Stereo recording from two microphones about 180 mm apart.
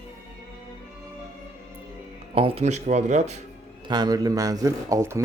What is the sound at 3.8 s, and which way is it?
Speech, 25° right (ahead or behind).